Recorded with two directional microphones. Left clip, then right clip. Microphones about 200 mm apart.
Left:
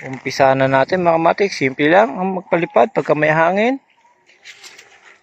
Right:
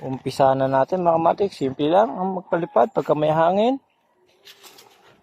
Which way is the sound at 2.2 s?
15° left (ahead or behind).